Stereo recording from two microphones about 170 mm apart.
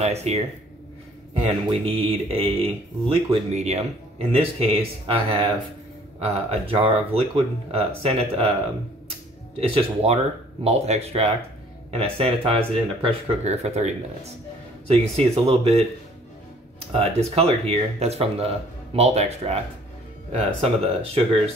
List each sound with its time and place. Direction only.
0.0 s speech: 40° right (ahead or behind)
6.2 s speech: 35° right (ahead or behind)
9.6 s speech: 35° right (ahead or behind)
16.9 s speech: 35° right (ahead or behind)